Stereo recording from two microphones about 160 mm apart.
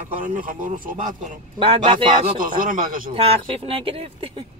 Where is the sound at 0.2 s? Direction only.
55° right (ahead or behind).